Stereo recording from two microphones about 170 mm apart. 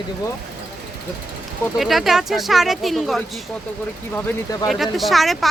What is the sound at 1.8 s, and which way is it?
Speech, centre (ahead or behind).